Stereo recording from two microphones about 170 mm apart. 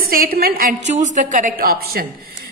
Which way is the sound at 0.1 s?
60° right (ahead or behind).